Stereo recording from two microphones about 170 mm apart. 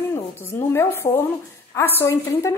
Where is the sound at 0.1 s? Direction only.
15° left (ahead or behind).